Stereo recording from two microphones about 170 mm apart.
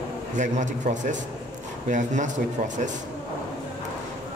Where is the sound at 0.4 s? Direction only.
45° right (ahead or behind).